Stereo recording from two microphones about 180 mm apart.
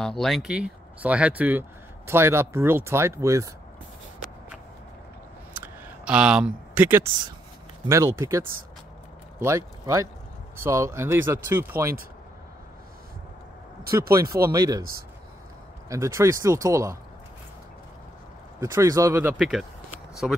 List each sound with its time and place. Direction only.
0.0 s speech: 5° left (ahead or behind); by 3.4 s 15° right (ahead or behind)
5.5 s a sound: 10° right (ahead or behind)
7.9 s speech: 15° right (ahead or behind)
14.1 s speech: 15° right (ahead or behind)
18.6 s speech: 15° right (ahead or behind)
20.2 s speech: centre (ahead or behind)